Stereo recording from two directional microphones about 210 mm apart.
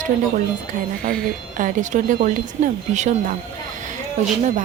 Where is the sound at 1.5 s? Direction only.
35° right (ahead or behind).